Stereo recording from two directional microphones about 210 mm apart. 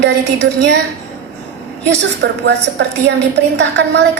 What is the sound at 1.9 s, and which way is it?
A woman's voice, 55° right (ahead or behind).